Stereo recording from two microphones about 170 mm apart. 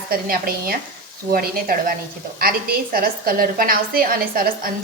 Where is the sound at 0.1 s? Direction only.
60° right (ahead or behind).